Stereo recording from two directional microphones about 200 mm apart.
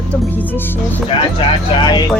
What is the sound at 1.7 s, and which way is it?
Speech, 25° left (ahead or behind).